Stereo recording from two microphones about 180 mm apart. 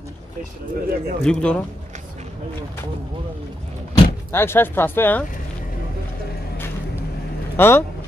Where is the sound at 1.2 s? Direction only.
5° left (ahead or behind).